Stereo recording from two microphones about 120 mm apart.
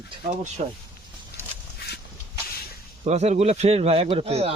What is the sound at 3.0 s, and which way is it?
Speech, 70° right (ahead or behind).